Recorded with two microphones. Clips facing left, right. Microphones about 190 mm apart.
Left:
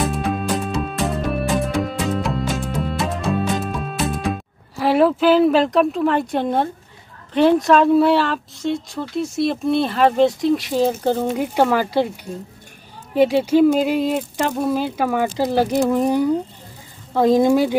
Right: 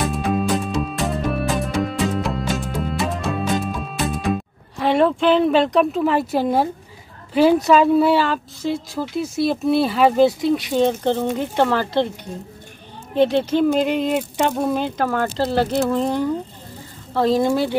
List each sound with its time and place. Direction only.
0.0 s music: centre (ahead or behind)
7.3 s speech: centre (ahead or behind)
13.1 s speech: 10° left (ahead or behind)